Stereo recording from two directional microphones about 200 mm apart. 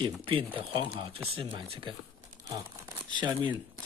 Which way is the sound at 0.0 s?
25° right (ahead or behind).